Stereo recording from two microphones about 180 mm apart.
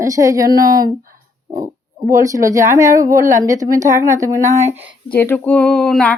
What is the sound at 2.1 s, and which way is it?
A woman's voice, 20° right (ahead or behind).